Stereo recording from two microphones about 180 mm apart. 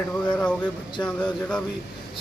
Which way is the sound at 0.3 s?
5° left (ahead or behind).